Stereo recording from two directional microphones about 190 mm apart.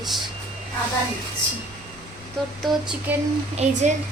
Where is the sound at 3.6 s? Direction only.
40° right (ahead or behind).